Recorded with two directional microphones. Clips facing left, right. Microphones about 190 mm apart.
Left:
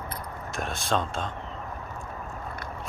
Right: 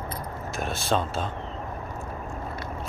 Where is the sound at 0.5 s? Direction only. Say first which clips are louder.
Right 2 dB; centre (ahead or behind).